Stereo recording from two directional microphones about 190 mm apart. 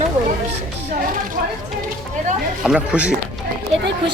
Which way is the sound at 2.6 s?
5° right (ahead or behind).